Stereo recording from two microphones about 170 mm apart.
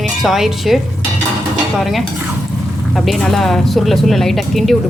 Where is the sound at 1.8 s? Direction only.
Centre (ahead or behind).